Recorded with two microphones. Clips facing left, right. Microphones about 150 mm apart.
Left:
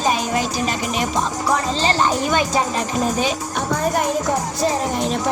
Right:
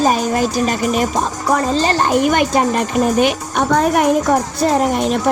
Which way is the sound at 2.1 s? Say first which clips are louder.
Right 5 dB; 65° right (ahead or behind).